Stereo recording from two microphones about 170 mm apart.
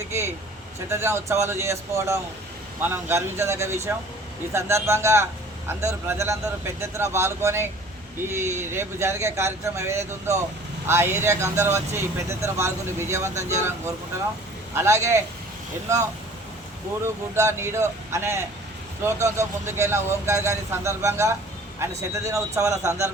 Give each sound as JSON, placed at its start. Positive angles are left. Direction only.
{"t": 0.1, "sound": "a sound", "side_deg": -15}
{"t": 0.9, "sound": "a man's voice", "side_deg": -15}
{"t": 14.8, "sound": "a man's voice", "side_deg": -15}
{"t": 17.3, "sound": "a man's voice", "side_deg": -15}